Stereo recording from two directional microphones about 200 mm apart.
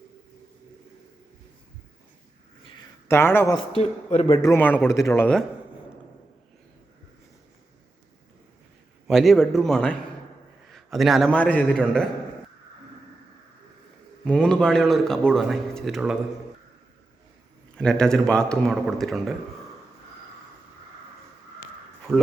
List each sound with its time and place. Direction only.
3.1 s a man's voice: 10° left (ahead or behind); by 4.4 s 30° left (ahead or behind)
4.4 s a man's voice: 15° left (ahead or behind)
9.0 s a man's voice: centre (ahead or behind)
14.3 s speech: 5° left (ahead or behind)
17.7 s speech: 5° left (ahead or behind)